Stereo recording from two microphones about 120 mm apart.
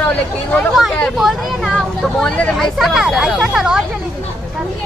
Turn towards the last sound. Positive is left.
turn(degrees=-5)  # may be behind; listen again after turning